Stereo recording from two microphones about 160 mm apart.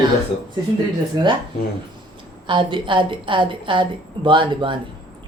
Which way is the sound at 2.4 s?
30° right (ahead or behind).